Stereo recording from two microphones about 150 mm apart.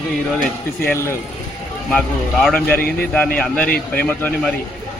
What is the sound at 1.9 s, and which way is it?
Speech, 5° left (ahead or behind).